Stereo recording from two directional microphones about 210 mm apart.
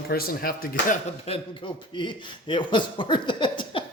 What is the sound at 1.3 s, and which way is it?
Speech, 30° left (ahead or behind).